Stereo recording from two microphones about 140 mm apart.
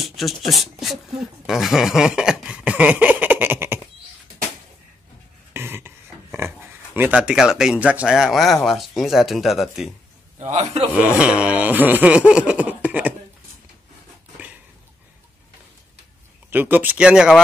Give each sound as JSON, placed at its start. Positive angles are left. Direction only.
{"t": 0.0, "sound": "speech", "side_deg": 0}
{"t": 5.5, "sound": "speech", "side_deg": -15}
{"t": 10.5, "sound": "a man's voice", "side_deg": -50}
{"t": 11.0, "sound": "speech", "side_deg": -10}
{"t": 16.4, "sound": "speech", "side_deg": -15}